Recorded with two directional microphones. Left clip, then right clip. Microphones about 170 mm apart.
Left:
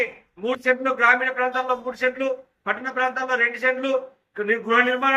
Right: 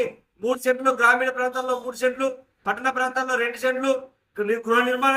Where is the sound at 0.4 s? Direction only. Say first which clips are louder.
Even; 20° right (ahead or behind).